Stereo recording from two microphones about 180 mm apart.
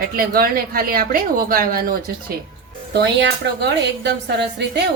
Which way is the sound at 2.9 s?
70° right (ahead or behind).